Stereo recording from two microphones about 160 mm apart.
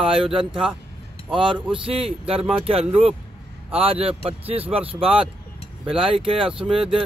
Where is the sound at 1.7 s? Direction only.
35° right (ahead or behind).